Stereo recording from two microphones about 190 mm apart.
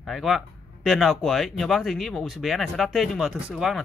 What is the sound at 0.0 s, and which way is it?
Speech, centre (ahead or behind).